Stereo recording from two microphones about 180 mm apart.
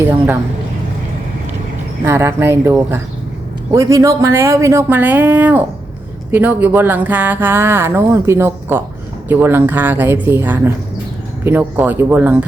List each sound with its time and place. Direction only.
0.0 s speech: 10° right (ahead or behind)
2.0 s speech: 15° right (ahead or behind)